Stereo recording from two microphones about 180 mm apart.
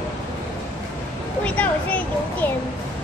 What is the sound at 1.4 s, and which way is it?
Speech, 5° left (ahead or behind).